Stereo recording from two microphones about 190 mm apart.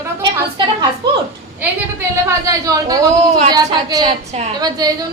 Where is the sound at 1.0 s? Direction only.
60° right (ahead or behind).